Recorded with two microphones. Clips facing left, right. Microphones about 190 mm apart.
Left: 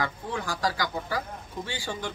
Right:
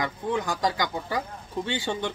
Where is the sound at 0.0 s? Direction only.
20° right (ahead or behind).